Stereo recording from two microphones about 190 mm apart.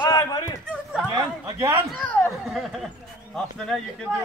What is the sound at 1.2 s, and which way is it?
Speech, 15° right (ahead or behind).